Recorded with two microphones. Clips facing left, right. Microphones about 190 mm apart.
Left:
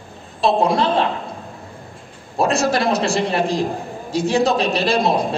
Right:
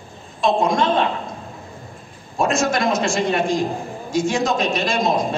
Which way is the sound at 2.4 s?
35° left (ahead or behind).